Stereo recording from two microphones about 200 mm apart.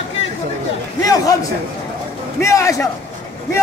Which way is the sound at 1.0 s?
15° left (ahead or behind).